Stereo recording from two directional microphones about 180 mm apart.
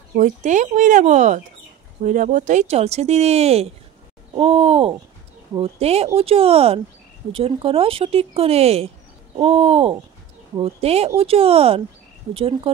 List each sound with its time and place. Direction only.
0.1 s speech: 45° right (ahead or behind)